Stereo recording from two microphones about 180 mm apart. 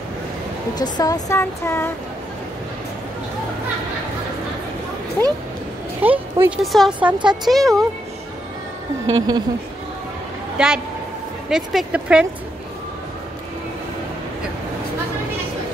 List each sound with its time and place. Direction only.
0.9 s a sound: 20° left (ahead or behind)
5.2 s a sound: 15° left (ahead or behind)
5.9 s speech: 10° right (ahead or behind)
6.6 s speech: centre (ahead or behind)
9.1 s a woman's voice: 20° right (ahead or behind)
10.6 s speech: 5° right (ahead or behind)